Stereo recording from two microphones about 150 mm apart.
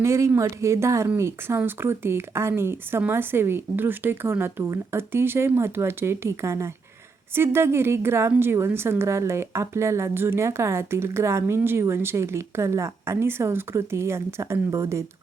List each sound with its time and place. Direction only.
0.0 s a woman's voice: 20° right (ahead or behind)